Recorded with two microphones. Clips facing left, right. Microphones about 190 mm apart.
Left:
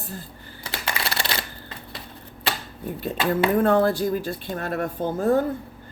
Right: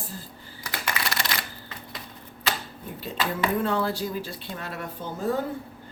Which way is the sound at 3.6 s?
50° left (ahead or behind).